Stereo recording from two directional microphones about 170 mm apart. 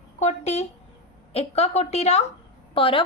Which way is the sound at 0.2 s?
40° left (ahead or behind).